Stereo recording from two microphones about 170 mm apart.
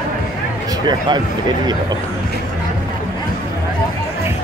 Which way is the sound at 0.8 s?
25° right (ahead or behind).